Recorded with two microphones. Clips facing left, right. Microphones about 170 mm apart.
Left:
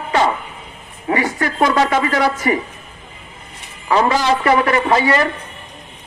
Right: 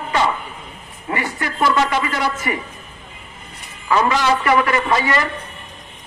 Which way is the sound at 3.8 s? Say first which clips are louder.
Left 2 dB; 35° left (ahead or behind).